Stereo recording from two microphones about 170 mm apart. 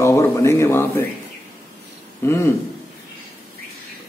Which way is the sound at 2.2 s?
15° left (ahead or behind).